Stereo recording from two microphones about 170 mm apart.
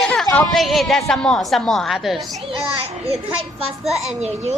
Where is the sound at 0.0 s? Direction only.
Centre (ahead or behind).